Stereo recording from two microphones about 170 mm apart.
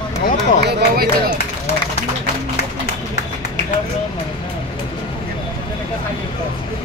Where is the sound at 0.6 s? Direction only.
60° right (ahead or behind).